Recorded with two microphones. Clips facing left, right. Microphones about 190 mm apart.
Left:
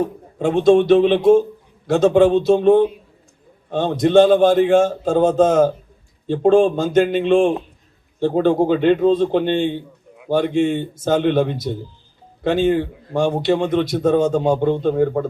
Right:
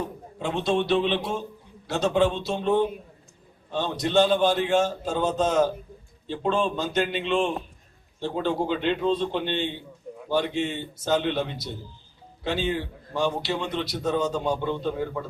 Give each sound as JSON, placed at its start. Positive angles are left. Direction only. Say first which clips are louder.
{"t": 0.0, "sound": "a man's voice", "louder": "left 10 dB", "side_deg": 50}